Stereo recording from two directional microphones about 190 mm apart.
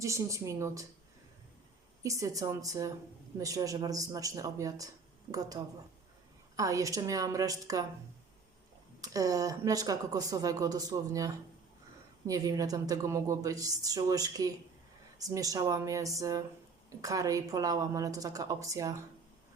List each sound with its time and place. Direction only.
0.0 s a woman's voice: 15° right (ahead or behind)
2.0 s a woman's voice: 15° right (ahead or behind)
9.0 s a woman's voice: 20° right (ahead or behind)